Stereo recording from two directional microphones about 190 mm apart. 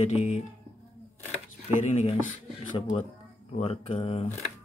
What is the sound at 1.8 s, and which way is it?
Speech, 30° left (ahead or behind).